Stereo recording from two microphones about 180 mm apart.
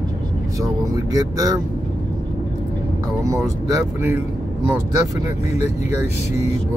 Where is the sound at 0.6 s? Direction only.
20° right (ahead or behind).